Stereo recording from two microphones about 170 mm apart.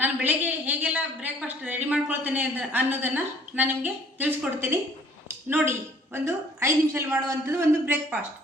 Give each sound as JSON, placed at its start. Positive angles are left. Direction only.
{"t": 0.0, "sound": "a woman's voice", "side_deg": -10}